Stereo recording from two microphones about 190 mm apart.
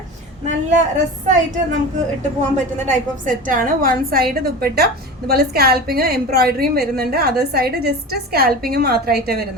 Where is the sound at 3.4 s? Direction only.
45° right (ahead or behind).